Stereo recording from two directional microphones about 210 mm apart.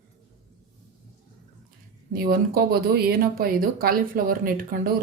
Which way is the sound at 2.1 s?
45° right (ahead or behind).